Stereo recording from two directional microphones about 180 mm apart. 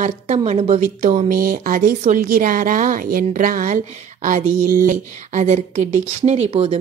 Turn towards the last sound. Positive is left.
turn(degrees=-35)  # may be behind; listen again after turning